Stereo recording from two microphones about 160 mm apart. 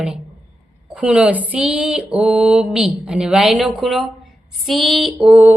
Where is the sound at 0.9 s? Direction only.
5° right (ahead or behind).